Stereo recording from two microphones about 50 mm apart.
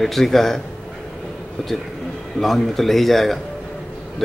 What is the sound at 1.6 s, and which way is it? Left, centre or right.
Speech, centre.